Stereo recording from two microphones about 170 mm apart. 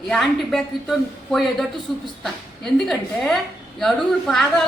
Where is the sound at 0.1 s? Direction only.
Centre (ahead or behind).